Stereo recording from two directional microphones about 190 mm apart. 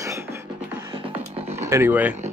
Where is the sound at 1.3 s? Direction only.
35° right (ahead or behind).